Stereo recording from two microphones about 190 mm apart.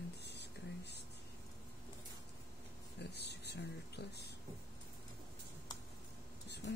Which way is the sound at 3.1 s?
60° left (ahead or behind).